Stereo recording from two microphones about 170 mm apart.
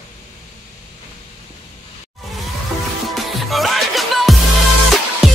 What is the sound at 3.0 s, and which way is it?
Music, centre (ahead or behind).